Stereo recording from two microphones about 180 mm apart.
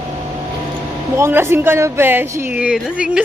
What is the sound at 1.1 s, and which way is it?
Speech, 15° right (ahead or behind).